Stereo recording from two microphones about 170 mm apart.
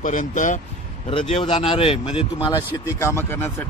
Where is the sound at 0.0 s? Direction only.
50° left (ahead or behind).